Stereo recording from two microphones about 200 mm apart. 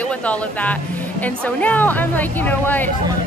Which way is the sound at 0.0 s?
5° left (ahead or behind).